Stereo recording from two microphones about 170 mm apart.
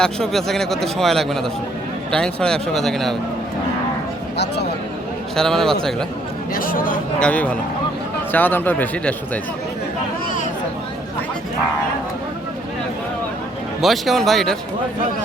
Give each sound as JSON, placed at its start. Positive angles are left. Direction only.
{"t": 0.0, "sound": "a man's voice", "side_deg": 5}
{"t": 5.4, "sound": "a man's voice", "side_deg": 5}
{"t": 6.5, "sound": "speech", "side_deg": 55}
{"t": 7.2, "sound": "a man's voice", "side_deg": 10}
{"t": 13.8, "sound": "a man's voice", "side_deg": 0}